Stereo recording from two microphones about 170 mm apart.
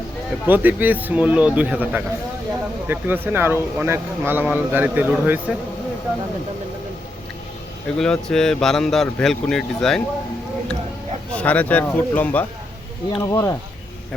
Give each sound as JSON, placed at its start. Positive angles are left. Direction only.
{"t": 0.4, "sound": "speech", "side_deg": -10}
{"t": 7.9, "sound": "a man's voice", "side_deg": 5}
{"t": 11.3, "sound": "speech", "side_deg": 10}